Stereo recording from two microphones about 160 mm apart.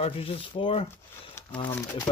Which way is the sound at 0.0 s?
35° left (ahead or behind).